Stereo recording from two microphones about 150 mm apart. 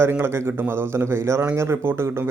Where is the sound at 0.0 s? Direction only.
15° right (ahead or behind).